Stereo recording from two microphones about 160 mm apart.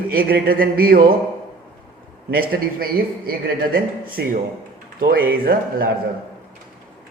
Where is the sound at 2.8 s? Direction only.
70° right (ahead or behind).